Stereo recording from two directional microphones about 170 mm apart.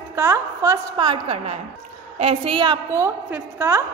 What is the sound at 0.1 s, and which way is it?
A woman's voice, 15° right (ahead or behind).